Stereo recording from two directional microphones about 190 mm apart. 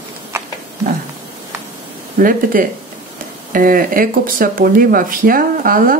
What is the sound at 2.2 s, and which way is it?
Speech, 45° right (ahead or behind).